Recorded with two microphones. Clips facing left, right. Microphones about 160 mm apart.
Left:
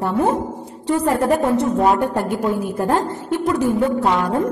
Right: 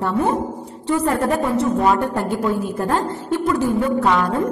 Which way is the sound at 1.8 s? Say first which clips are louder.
Left 1 dB; 15° left (ahead or behind).